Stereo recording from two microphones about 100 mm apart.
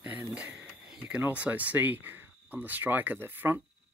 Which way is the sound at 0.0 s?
20° right (ahead or behind).